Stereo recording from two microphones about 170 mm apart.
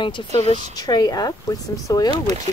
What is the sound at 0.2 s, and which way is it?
A woman's voice, 30° left (ahead or behind).